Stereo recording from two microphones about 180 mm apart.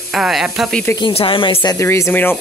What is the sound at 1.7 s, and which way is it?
Speech, 15° left (ahead or behind).